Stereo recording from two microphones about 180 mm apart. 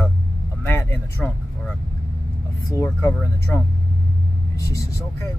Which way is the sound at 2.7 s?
15° left (ahead or behind).